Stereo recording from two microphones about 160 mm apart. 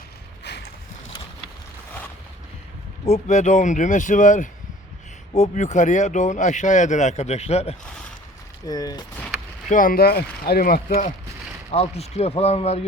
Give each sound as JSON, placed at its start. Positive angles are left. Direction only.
{"t": 0.5, "sound": "clip-clop", "side_deg": 90}
{"t": 3.1, "sound": "speech", "side_deg": 45}
{"t": 8.6, "sound": "speech", "side_deg": 25}
{"t": 9.6, "sound": "speech", "side_deg": 60}
{"t": 11.7, "sound": "speech", "side_deg": 40}